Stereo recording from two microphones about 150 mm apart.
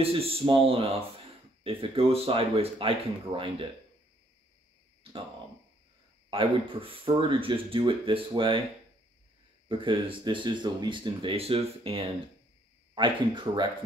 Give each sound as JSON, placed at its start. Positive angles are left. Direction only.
{"t": 0.0, "sound": "speech", "side_deg": -40}
{"t": 5.1, "sound": "speech", "side_deg": -35}
{"t": 6.3, "sound": "speech", "side_deg": -35}
{"t": 9.7, "sound": "speech", "side_deg": -35}